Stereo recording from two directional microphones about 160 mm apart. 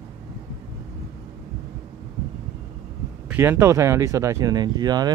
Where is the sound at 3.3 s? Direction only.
15° right (ahead or behind).